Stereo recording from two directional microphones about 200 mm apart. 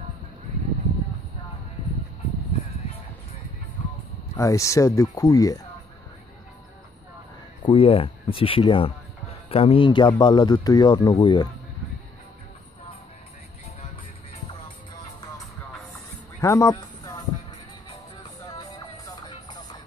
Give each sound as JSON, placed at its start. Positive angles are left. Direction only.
{"t": 4.4, "sound": "speech", "side_deg": 15}
{"t": 7.6, "sound": "speech", "side_deg": 30}
{"t": 16.3, "sound": "music", "side_deg": 15}
{"t": 19.2, "sound": "music", "side_deg": 20}